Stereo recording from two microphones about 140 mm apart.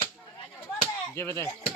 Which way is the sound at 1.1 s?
20° left (ahead or behind).